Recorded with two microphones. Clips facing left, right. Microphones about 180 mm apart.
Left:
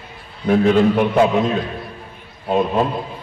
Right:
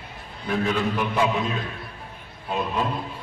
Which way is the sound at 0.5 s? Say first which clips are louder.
Left 10 dB; 55° left (ahead or behind).